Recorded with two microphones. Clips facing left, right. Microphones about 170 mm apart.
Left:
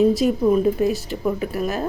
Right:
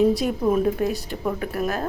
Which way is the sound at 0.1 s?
Centre (ahead or behind).